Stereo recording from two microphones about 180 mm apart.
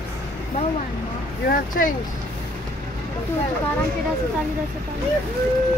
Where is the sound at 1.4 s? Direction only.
50° left (ahead or behind).